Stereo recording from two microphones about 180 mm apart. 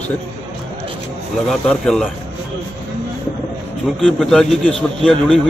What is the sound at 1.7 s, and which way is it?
Speech, 5° left (ahead or behind).